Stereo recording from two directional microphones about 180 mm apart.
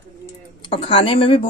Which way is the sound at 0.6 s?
30° left (ahead or behind).